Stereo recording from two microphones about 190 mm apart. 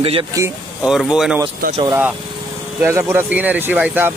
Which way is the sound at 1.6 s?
50° right (ahead or behind).